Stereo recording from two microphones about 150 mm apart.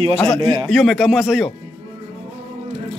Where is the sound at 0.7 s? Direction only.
Centre (ahead or behind).